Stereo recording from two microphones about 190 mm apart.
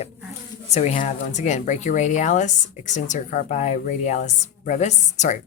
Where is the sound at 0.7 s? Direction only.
35° left (ahead or behind).